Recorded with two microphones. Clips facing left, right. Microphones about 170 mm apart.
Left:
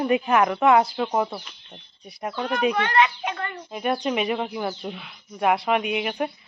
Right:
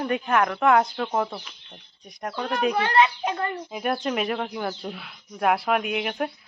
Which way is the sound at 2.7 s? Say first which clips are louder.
Even; 30° right (ahead or behind).